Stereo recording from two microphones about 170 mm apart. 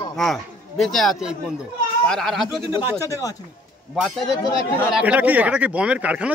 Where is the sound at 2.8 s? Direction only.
15° right (ahead or behind).